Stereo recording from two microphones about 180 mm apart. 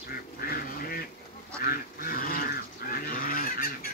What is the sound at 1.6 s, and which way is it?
Goose, 55° left (ahead or behind).